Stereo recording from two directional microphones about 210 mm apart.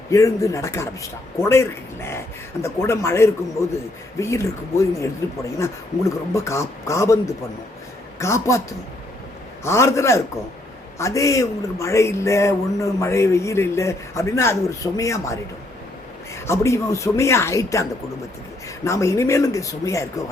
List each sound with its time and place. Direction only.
0.1 s a man's voice: 15° left (ahead or behind)
6.1 s a man's voice: 15° left (ahead or behind)
9.6 s a man's voice: 15° left (ahead or behind)
18.9 s a man's voice: 15° left (ahead or behind)